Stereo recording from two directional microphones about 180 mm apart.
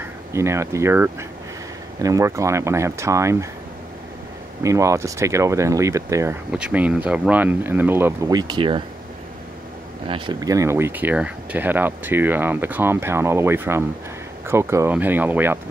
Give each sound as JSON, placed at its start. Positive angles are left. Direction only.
{"t": 0.3, "sound": "speech", "side_deg": -15}
{"t": 4.6, "sound": "speech", "side_deg": -15}
{"t": 10.0, "sound": "speech", "side_deg": -25}